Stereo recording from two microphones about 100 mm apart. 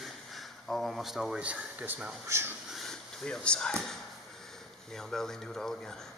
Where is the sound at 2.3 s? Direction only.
25° right (ahead or behind).